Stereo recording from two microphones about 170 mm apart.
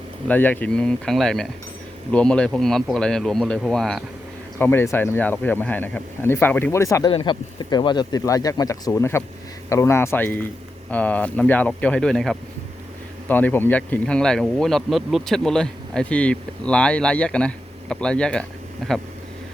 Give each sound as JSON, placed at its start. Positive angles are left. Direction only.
{"t": 0.3, "sound": "a man's voice", "side_deg": 10}